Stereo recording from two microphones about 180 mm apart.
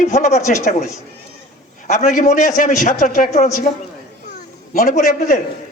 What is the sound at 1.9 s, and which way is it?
A man's voice, 45° left (ahead or behind).